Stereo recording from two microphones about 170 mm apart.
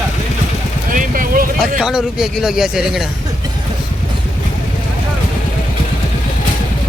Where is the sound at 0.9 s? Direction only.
55° right (ahead or behind).